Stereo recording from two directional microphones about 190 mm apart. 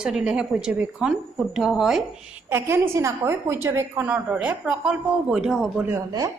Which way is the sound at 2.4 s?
10° right (ahead or behind).